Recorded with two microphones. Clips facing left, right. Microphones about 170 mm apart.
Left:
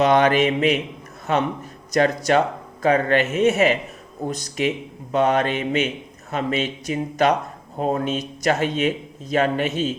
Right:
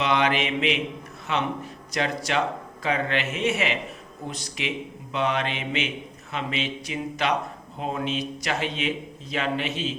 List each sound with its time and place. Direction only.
0.0 s speech: 45° left (ahead or behind)